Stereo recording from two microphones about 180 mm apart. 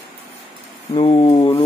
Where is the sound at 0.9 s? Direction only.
30° left (ahead or behind).